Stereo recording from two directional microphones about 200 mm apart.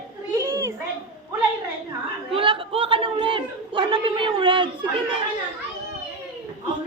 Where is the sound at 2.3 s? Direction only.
25° right (ahead or behind).